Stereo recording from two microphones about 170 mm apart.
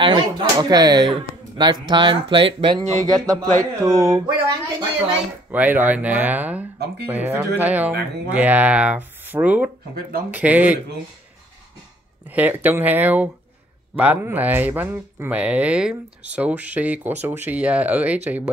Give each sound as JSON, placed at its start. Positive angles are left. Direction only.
{"t": 0.0, "sound": "speech", "side_deg": -25}
{"t": 2.8, "sound": "speech", "side_deg": -40}
{"t": 3.8, "sound": "speech", "side_deg": -20}
{"t": 5.5, "sound": "speech", "side_deg": -10}
{"t": 12.3, "sound": "speech", "side_deg": -10}